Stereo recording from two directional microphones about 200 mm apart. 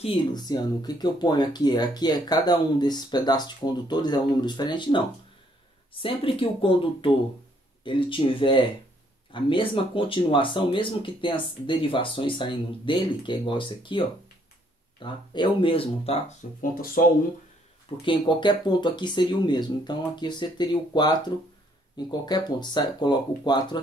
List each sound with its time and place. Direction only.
0.0 s speech: 25° left (ahead or behind)
6.0 s speech: 25° left (ahead or behind)
16.4 s speech: 40° left (ahead or behind)
18.0 s speech: 25° left (ahead or behind)